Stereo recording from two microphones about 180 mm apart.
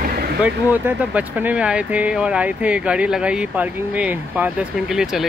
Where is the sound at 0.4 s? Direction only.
10° right (ahead or behind).